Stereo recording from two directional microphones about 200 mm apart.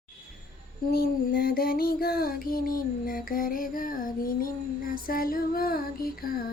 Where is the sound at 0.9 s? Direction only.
50° left (ahead or behind).